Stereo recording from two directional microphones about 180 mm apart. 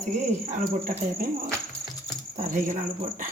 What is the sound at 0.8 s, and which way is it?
Speech, 55° right (ahead or behind).